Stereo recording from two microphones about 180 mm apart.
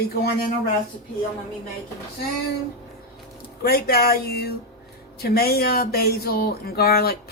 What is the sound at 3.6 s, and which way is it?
Speech, 55° left (ahead or behind).